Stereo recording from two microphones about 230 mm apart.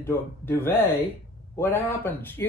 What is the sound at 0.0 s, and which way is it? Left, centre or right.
Speech, centre.